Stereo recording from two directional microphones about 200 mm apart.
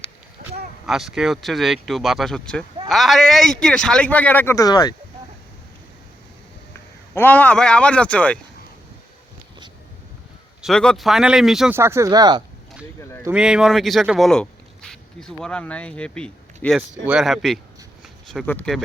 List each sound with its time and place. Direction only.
0.9 s speech: centre (ahead or behind); by 4.9 s 20° left (ahead or behind)
7.1 s speech: 10° left (ahead or behind)
10.6 s speech: 5° left (ahead or behind)
11.8 s speech: 15° right (ahead or behind)
13.0 s speech: 15° left (ahead or behind)
13.2 s speech: 5° right (ahead or behind)